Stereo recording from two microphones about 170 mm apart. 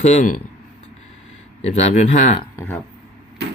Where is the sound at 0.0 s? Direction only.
45° left (ahead or behind).